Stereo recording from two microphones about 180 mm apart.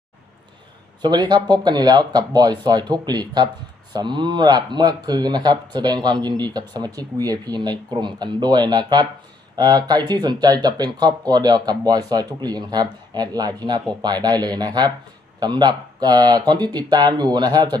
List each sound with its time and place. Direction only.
1.0 s speech: 25° right (ahead or behind)